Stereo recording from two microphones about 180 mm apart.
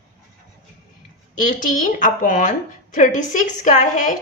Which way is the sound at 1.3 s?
50° left (ahead or behind).